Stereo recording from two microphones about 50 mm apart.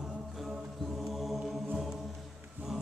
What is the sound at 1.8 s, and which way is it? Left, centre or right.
Choir, centre.